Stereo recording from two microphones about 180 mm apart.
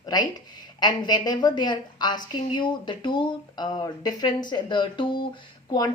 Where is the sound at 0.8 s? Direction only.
25° left (ahead or behind).